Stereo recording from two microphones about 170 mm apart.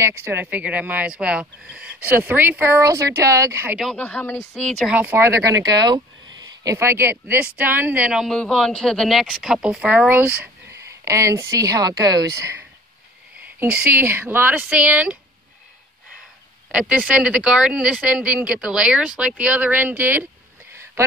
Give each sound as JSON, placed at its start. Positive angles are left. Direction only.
{"t": 0.0, "sound": "speech", "side_deg": -15}
{"t": 3.8, "sound": "speech", "side_deg": 10}
{"t": 4.9, "sound": "speech", "side_deg": -10}
{"t": 16.7, "sound": "speech", "side_deg": -5}